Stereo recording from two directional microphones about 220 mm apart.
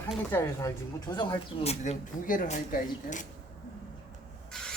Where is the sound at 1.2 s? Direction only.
25° left (ahead or behind).